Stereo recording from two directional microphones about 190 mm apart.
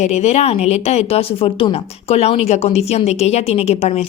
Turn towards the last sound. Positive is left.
turn(degrees=35)  # may be behind; listen again after turning